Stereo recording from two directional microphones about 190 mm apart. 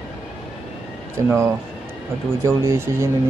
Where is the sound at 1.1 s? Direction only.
15° right (ahead or behind).